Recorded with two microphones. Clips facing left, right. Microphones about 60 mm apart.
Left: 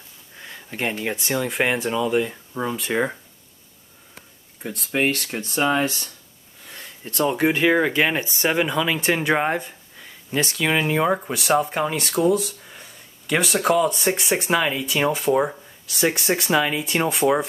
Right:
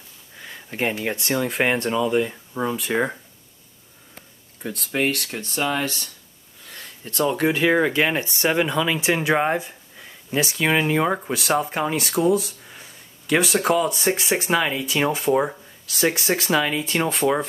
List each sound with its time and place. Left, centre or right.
0.4 s speech: centre
5.2 s speech: left
6.7 s a sound: left
7.4 s speech: centre